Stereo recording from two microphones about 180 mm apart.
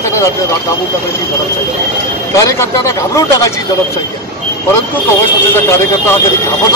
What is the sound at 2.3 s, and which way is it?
Speech, 15° left (ahead or behind).